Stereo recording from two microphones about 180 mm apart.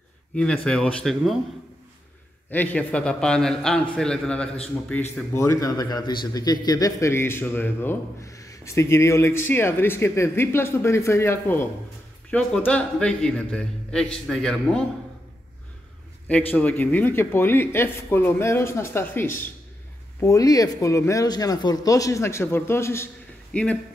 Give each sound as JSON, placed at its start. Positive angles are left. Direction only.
{"t": 0.3, "sound": "a man's voice", "side_deg": 5}
{"t": 2.5, "sound": "a man's voice", "side_deg": 10}
{"t": 5.3, "sound": "a man's voice", "side_deg": 15}
{"t": 16.3, "sound": "a man's voice", "side_deg": 10}